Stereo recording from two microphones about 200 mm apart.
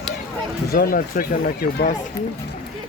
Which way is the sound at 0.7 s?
50° left (ahead or behind).